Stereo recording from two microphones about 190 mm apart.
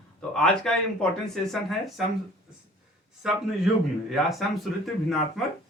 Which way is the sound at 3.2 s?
5° right (ahead or behind).